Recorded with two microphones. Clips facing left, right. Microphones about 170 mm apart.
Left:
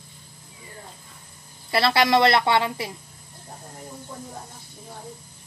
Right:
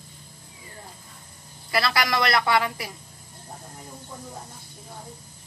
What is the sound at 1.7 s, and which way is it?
A woman's voice, 25° left (ahead or behind).